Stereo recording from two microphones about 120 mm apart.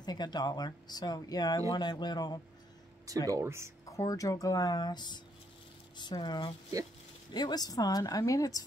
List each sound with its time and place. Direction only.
0.0 s speech: 35° left (ahead or behind)
3.3 s speech: 25° right (ahead or behind)
3.8 s speech: 30° left (ahead or behind)